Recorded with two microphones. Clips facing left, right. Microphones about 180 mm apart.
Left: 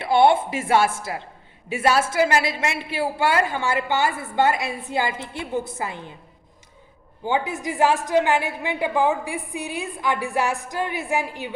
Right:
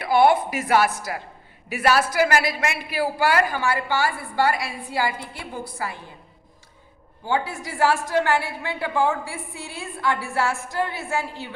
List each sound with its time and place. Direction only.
0.0 s a woman's voice: 25° left (ahead or behind)
7.3 s a woman's voice: 20° left (ahead or behind)